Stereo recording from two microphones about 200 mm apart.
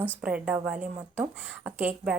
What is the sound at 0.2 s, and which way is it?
Speech, 5° right (ahead or behind).